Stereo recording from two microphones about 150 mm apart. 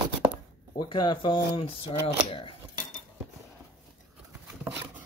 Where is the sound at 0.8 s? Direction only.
30° left (ahead or behind).